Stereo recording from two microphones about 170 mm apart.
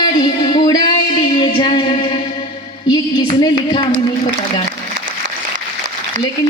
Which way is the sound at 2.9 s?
25° left (ahead or behind).